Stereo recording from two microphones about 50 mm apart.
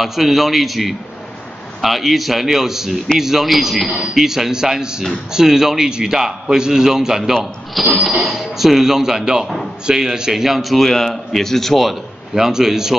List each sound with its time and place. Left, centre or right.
0.0 s a man's voice: centre
12.4 s a man's voice: centre